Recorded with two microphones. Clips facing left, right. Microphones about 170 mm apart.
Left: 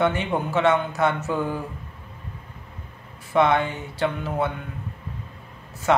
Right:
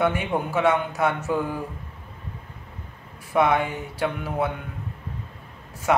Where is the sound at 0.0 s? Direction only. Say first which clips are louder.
Left 1 dB; 10° right (ahead or behind).